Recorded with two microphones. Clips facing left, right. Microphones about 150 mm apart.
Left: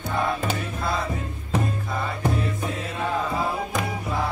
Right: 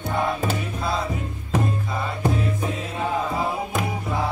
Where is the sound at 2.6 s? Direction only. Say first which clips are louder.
Right 1 dB; 15° right (ahead or behind).